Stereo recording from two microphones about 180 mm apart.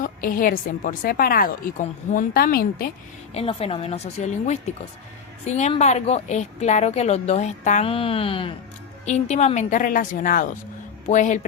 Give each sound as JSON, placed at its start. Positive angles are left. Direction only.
{"t": 0.0, "sound": "a woman's voice", "side_deg": 50}
{"t": 3.3, "sound": "a woman's voice", "side_deg": 35}